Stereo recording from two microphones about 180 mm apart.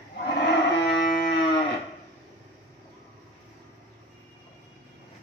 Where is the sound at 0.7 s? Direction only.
70° left (ahead or behind).